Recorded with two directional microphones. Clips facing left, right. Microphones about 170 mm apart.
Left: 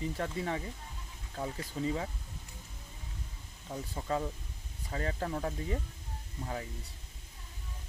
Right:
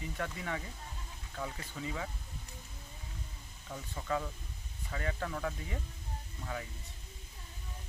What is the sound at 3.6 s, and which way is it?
Speech, 30° left (ahead or behind).